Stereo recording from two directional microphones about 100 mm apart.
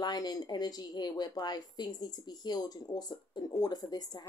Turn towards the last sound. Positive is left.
turn(degrees=40)  # may be behind; listen again after turning